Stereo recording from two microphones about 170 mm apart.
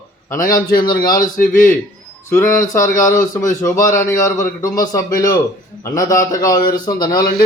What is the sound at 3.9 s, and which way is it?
A man's voice, 20° left (ahead or behind).